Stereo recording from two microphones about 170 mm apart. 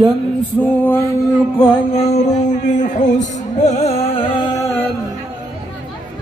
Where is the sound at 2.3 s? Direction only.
45° left (ahead or behind).